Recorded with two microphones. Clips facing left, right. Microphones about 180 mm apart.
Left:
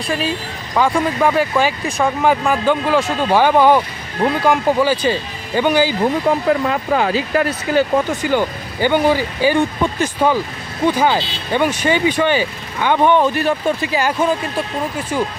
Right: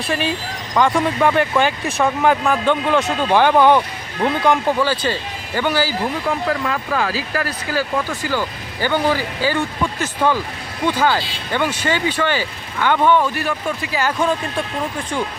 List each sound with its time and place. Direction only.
0.1 s speech: centre (ahead or behind); by 14.1 s 20° left (ahead or behind)
14.2 s speech: 5° left (ahead or behind)